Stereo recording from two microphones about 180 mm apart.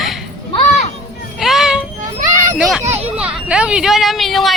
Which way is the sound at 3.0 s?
5° right (ahead or behind).